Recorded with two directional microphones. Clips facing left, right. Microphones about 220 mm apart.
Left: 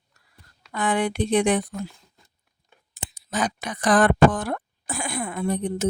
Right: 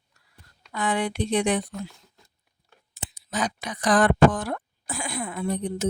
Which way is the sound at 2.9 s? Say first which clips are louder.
Left 2 dB; 50° left (ahead or behind).